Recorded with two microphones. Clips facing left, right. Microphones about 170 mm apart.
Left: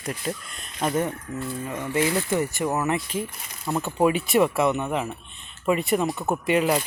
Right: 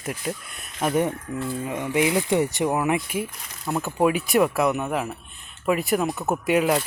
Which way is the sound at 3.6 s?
Centre (ahead or behind).